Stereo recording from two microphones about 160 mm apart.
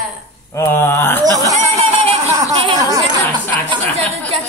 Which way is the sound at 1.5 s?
45° right (ahead or behind).